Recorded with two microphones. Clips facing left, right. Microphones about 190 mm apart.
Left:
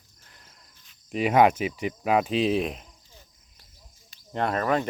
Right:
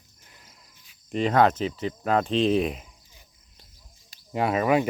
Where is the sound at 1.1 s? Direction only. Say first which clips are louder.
Left 1 dB; 10° left (ahead or behind).